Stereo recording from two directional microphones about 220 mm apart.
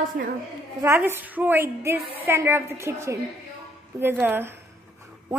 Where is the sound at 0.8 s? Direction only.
10° right (ahead or behind).